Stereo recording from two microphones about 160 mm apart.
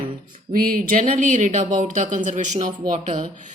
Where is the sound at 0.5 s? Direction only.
60° right (ahead or behind).